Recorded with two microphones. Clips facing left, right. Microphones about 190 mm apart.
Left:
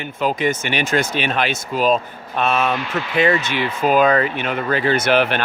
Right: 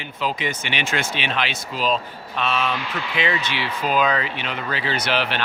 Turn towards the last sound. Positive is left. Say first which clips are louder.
# left 7 dB
turn(degrees=50)  # may be behind; listen again after turning